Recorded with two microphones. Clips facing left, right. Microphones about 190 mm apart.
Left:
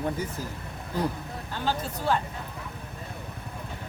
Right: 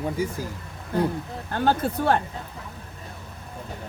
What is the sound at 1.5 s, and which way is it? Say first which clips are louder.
Speech: right 8 dB; 55° right (ahead or behind).